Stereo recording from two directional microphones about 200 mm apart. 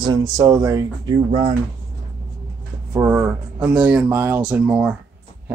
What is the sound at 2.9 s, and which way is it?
Speech, 10° right (ahead or behind).